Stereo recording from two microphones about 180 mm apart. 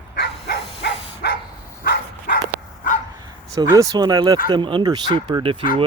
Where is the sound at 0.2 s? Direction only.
70° left (ahead or behind).